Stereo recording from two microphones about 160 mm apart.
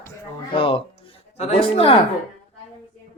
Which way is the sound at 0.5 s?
35° left (ahead or behind).